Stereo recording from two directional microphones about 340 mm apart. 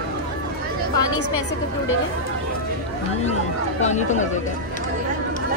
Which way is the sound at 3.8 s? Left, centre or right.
Left.